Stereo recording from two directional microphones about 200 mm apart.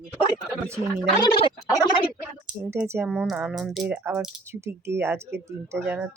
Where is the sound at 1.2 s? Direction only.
25° left (ahead or behind).